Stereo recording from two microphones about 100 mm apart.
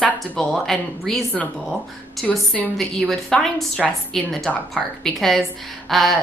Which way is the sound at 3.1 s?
5° left (ahead or behind).